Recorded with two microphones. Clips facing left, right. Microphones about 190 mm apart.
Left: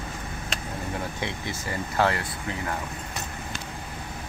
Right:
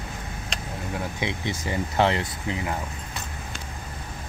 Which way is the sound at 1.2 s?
20° right (ahead or behind).